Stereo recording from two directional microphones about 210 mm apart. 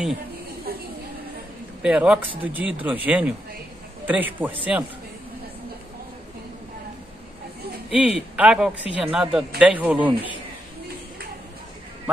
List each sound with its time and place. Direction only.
0.7 s a sound: 45° right (ahead or behind)
1.8 s speech: 5° right (ahead or behind)
7.9 s a man's voice: 5° right (ahead or behind)